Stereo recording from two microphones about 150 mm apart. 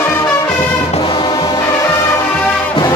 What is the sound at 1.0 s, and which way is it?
Music, 30° left (ahead or behind).